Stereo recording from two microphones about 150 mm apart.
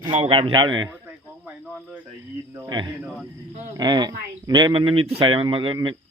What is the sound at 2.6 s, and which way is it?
Speech, 30° right (ahead or behind).